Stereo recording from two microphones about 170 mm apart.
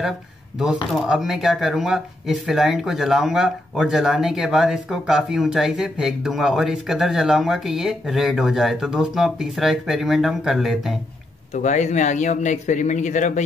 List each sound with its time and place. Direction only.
1.0 s speech: 5° right (ahead or behind)
11.5 s speech: 45° left (ahead or behind)